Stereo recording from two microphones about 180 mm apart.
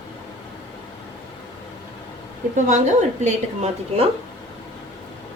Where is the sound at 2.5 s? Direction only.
45° right (ahead or behind).